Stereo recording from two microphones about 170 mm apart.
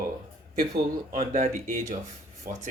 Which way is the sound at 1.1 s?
55° right (ahead or behind).